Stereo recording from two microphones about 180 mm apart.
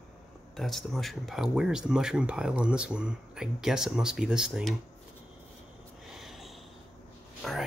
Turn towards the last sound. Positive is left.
turn(degrees=0)  # may be behind; listen again after turning